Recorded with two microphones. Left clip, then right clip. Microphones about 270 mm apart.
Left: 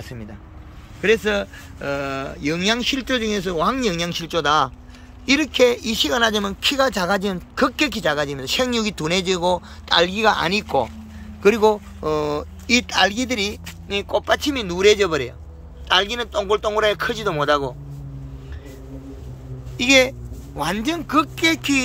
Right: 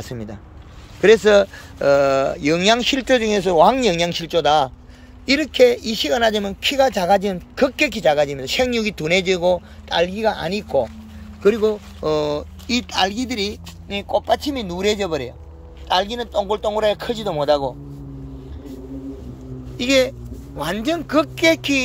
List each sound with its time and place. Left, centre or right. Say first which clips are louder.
0.0 s speech: right 5 dB; right; by 17.6 s centre
19.8 s speech: left 2 dB; centre